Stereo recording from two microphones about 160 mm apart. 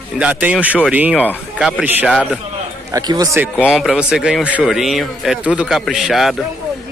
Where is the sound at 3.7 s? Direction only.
Centre (ahead or behind).